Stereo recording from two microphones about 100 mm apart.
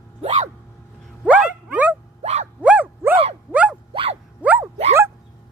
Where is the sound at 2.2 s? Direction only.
90° right.